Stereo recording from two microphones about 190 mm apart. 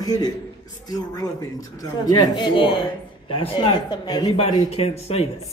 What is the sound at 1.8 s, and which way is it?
Speech, 20° left (ahead or behind).